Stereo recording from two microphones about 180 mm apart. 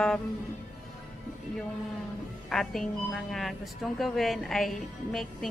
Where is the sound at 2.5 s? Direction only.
Centre (ahead or behind).